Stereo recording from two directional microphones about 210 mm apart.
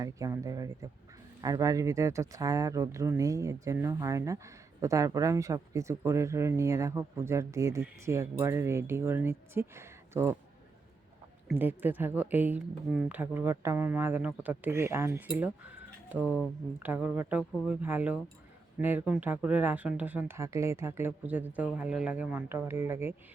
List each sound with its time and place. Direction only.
0.0 s speech: 15° right (ahead or behind)
11.4 s speech: 10° right (ahead or behind)
16.2 s speech: 10° left (ahead or behind)
16.8 s speech: 10° right (ahead or behind)